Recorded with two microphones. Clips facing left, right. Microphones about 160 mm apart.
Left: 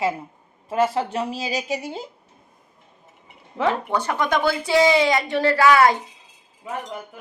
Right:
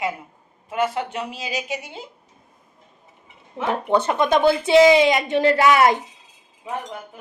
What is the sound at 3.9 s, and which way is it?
A woman's voice, 25° right (ahead or behind).